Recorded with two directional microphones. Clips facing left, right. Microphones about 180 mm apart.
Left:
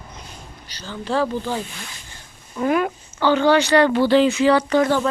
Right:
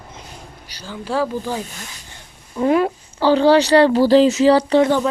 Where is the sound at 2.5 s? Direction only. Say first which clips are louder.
Right 4 dB; 25° right (ahead or behind).